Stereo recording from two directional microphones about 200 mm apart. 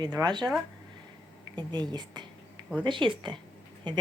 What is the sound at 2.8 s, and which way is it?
Speech, 25° right (ahead or behind).